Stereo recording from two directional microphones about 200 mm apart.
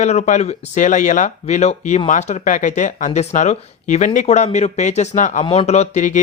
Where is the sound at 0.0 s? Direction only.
35° left (ahead or behind).